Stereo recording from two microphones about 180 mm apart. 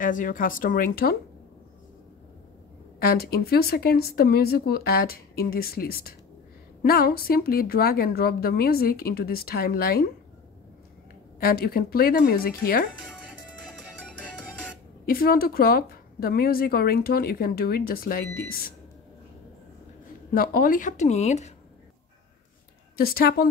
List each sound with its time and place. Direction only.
0.0 s speech: 50° left (ahead or behind)
3.0 s a woman's voice: 60° left (ahead or behind)
11.3 s a woman's voice: 55° left (ahead or behind)
15.0 s a woman's voice: 55° left (ahead or behind)
20.3 s speech: 50° left (ahead or behind)
22.9 s a woman's voice: 55° left (ahead or behind)